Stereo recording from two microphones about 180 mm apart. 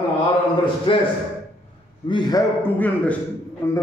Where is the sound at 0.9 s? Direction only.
30° left (ahead or behind).